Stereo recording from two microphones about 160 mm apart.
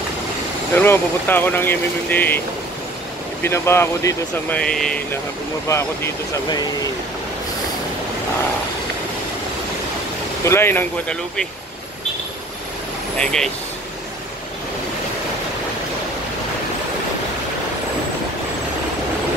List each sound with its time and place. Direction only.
0.7 s speech: 10° left (ahead or behind)
3.4 s speech: 15° left (ahead or behind)
4.5 s speech: 5° left (ahead or behind)
5.7 s speech: 15° left (ahead or behind)
10.4 s speech: 15° left (ahead or behind)
13.2 s speech: 5° left (ahead or behind)